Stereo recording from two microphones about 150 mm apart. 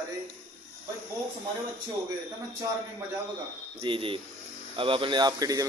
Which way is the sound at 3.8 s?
35° right (ahead or behind).